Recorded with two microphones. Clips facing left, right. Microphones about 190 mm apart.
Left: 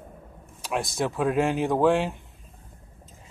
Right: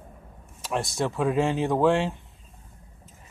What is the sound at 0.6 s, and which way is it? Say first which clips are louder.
Speech: even; centre (ahead or behind).